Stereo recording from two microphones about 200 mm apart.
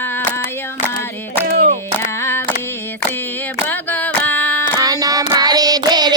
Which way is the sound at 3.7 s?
10° left (ahead or behind).